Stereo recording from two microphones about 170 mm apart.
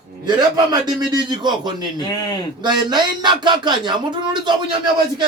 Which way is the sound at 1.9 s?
25° left (ahead or behind).